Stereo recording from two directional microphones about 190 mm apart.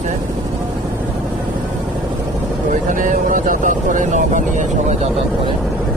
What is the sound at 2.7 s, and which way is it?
Speech, 45° right (ahead or behind).